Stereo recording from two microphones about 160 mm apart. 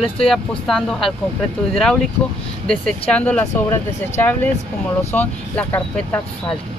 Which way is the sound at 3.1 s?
10° left (ahead or behind).